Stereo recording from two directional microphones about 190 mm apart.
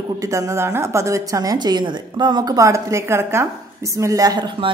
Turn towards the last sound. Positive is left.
turn(degrees=-20)  # may be behind; listen again after turning